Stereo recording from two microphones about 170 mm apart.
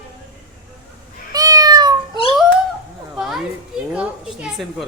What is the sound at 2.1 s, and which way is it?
Cat, 35° left (ahead or behind).